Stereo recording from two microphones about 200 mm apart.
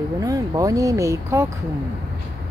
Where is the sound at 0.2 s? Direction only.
15° right (ahead or behind).